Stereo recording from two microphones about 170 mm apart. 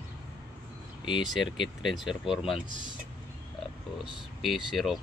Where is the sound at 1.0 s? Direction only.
30° left (ahead or behind).